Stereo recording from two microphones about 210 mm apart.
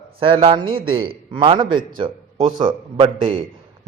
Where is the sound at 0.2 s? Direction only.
25° right (ahead or behind).